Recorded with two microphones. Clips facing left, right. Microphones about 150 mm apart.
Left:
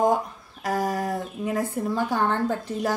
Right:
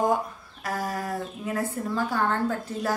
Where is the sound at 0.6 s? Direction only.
20° left (ahead or behind).